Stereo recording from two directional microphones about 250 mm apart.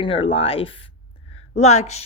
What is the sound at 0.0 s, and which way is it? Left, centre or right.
A woman's voice, left.